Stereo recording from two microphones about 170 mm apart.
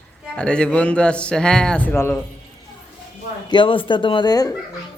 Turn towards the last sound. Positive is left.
turn(degrees=25)  # may be behind; listen again after turning